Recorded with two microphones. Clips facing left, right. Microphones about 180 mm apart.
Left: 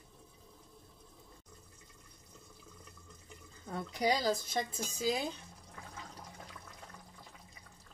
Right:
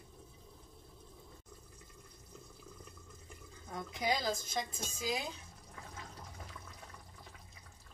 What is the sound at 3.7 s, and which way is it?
Speech, 35° left (ahead or behind).